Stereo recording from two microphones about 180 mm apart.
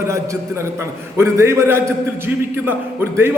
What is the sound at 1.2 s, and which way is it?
A man's voice, 15° right (ahead or behind).